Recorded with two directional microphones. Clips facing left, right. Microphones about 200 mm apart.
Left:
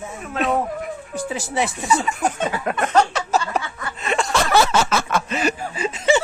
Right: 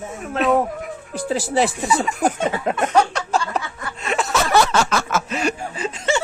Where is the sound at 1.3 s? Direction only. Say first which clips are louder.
Right 6 dB; 35° right (ahead or behind).